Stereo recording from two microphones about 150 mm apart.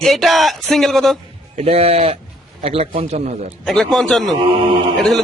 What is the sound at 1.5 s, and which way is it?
Speech, 40° right (ahead or behind).